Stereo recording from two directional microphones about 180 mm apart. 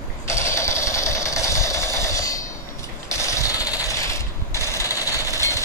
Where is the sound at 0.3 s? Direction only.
15° left (ahead or behind).